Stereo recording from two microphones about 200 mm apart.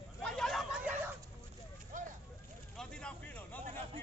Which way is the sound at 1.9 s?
40° right (ahead or behind).